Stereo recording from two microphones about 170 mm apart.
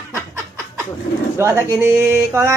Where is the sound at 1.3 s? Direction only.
15° right (ahead or behind).